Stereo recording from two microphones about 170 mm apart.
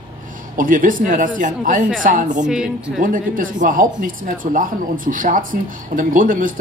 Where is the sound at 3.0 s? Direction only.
55° right (ahead or behind).